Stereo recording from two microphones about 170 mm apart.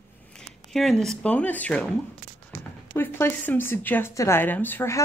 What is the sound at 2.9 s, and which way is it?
Speech, 10° left (ahead or behind).